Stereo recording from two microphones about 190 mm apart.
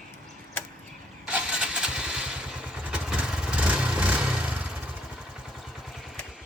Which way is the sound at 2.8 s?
5° right (ahead or behind).